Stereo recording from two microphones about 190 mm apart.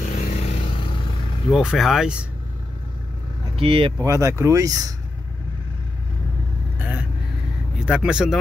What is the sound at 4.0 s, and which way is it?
Speech, 15° right (ahead or behind).